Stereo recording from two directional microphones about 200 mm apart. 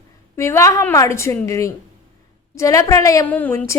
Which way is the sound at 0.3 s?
15° left (ahead or behind).